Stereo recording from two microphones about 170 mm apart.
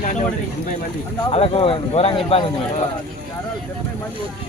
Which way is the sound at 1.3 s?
35° left (ahead or behind).